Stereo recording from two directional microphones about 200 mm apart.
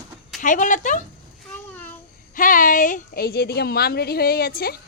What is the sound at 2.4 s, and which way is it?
A woman's voice, 40° left (ahead or behind).